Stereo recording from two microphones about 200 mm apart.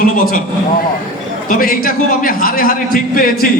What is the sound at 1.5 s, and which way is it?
A man's voice, 45° left (ahead or behind).